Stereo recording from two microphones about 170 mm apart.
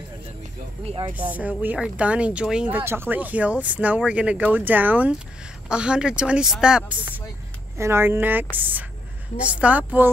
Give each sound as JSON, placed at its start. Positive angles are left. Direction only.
{"t": 0.8, "sound": "speech", "side_deg": -30}
{"t": 1.3, "sound": "speech", "side_deg": -10}